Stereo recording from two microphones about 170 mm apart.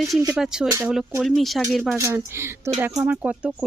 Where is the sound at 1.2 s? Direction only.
Centre (ahead or behind).